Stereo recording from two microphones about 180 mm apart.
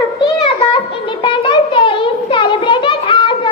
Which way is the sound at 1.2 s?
25° left (ahead or behind).